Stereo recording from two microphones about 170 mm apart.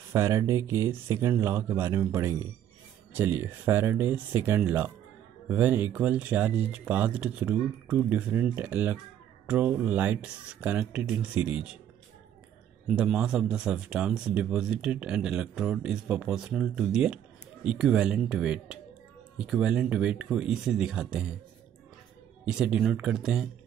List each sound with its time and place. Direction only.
0.1 s speech: 20° right (ahead or behind)
12.8 s speech: 5° right (ahead or behind)
22.4 s speech: 5° right (ahead or behind)